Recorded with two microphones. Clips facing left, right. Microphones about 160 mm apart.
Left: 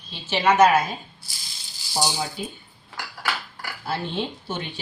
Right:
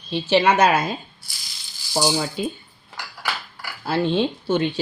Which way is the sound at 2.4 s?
90° right.